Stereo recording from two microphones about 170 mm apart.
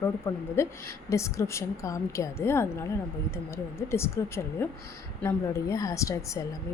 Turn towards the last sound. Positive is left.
turn(degrees=20)  # may be behind; listen again after turning